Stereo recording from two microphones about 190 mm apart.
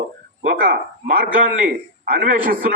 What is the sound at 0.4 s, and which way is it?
A man's voice, 45° right (ahead or behind).